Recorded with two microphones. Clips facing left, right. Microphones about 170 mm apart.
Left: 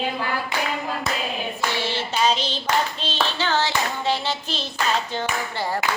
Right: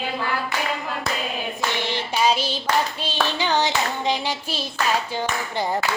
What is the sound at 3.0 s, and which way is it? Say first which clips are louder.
Hands: right 1 dB; 15° right (ahead or behind).